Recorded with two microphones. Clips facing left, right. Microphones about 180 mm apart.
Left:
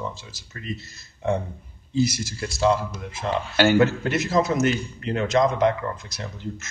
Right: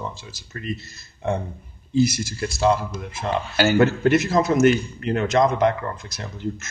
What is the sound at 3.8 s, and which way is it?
Speech, 55° right (ahead or behind).